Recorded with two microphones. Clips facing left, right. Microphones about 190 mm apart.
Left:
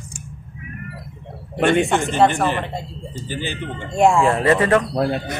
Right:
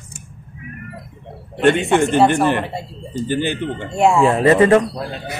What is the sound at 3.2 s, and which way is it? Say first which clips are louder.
Speech: right 8 dB; 55° right (ahead or behind).